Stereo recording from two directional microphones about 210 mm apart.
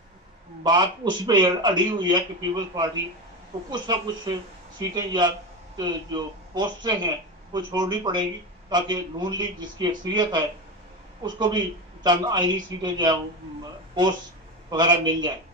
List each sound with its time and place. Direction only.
0.7 s speech: 20° right (ahead or behind)
14.7 s speech: 20° right (ahead or behind)